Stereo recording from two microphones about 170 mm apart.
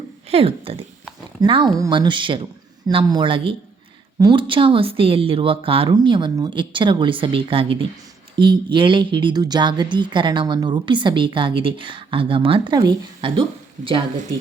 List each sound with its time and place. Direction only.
0.3 s speech: 35° right (ahead or behind)